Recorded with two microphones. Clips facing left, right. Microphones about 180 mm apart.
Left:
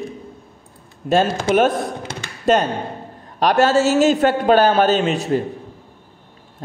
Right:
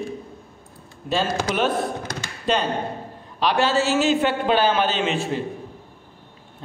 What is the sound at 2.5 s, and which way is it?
A man's voice, 45° left (ahead or behind).